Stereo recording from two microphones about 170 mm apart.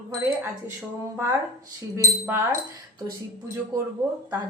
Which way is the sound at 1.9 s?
15° right (ahead or behind).